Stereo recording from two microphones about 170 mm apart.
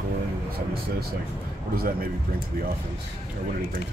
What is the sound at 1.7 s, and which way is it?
Speech, 60° right (ahead or behind).